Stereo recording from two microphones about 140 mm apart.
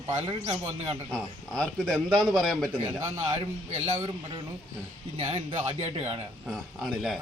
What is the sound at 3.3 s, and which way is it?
Speech, 50° right (ahead or behind).